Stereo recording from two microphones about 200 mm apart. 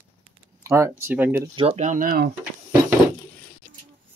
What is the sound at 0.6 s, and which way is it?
Speech, 15° right (ahead or behind).